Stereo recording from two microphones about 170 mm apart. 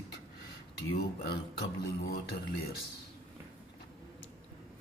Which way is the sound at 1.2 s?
80° left.